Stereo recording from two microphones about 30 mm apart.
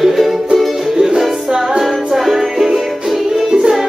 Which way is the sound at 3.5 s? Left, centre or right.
Right.